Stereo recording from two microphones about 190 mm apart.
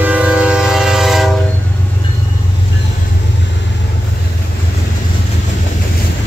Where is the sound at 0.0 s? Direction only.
5° right (ahead or behind).